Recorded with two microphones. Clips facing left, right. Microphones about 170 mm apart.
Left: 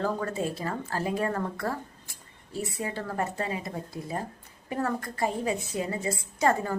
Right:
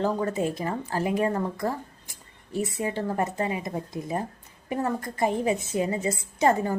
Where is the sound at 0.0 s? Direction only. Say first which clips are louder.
Right 4 dB; 20° right (ahead or behind).